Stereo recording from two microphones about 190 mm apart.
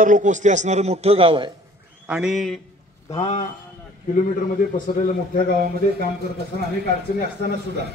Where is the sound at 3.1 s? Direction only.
30° left (ahead or behind).